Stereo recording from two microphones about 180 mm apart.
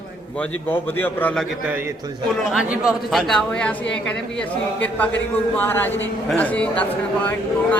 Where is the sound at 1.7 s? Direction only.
10° right (ahead or behind); by 4.5 s 5° left (ahead or behind).